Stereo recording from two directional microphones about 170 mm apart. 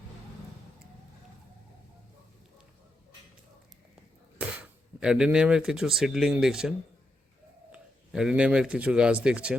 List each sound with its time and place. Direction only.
4.4 s speech: 10° right (ahead or behind)